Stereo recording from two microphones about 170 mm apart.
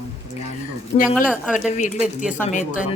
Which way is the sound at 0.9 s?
55° left (ahead or behind).